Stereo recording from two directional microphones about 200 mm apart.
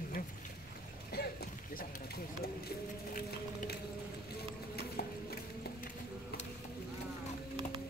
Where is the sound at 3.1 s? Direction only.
45° left (ahead or behind).